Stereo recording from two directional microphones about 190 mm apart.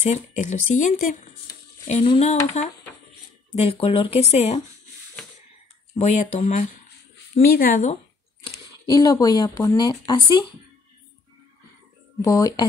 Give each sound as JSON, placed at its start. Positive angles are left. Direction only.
{"t": 0.0, "sound": "speech", "side_deg": 40}
{"t": 5.9, "sound": "speech", "side_deg": 35}
{"t": 7.4, "sound": "speech", "side_deg": 50}
{"t": 8.8, "sound": "speech", "side_deg": 20}
{"t": 12.2, "sound": "speech", "side_deg": 20}